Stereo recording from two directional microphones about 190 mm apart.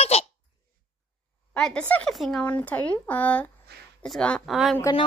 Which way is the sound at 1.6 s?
5° left (ahead or behind).